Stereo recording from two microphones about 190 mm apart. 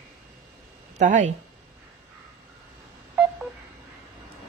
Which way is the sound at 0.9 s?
40° right (ahead or behind).